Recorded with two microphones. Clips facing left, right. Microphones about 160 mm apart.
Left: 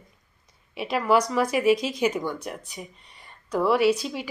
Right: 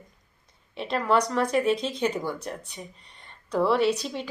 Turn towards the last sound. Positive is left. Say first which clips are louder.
# left 2 dB
turn(degrees=5)  # may be behind; listen again after turning